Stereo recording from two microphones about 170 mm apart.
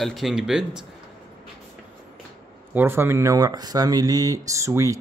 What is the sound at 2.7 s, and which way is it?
Speech, 15° right (ahead or behind).